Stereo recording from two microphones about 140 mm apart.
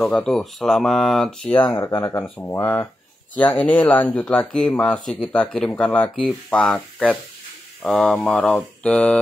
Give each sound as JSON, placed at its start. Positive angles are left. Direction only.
{"t": 0.0, "sound": "speech", "side_deg": 5}
{"t": 1.7, "sound": "speech", "side_deg": 20}